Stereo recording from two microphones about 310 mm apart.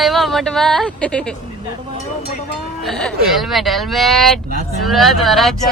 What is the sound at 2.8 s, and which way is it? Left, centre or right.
Speech, centre.